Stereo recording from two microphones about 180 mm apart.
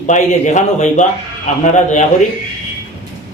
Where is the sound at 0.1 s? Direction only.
40° left (ahead or behind).